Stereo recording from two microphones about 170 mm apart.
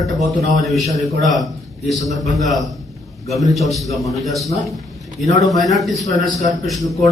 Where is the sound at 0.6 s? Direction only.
Centre (ahead or behind).